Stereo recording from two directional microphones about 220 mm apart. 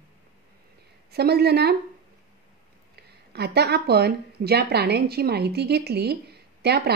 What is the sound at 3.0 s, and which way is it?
A woman's voice, 45° right (ahead or behind).